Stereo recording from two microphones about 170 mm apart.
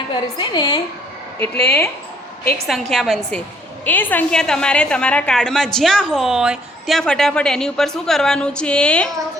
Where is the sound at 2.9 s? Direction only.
Centre (ahead or behind).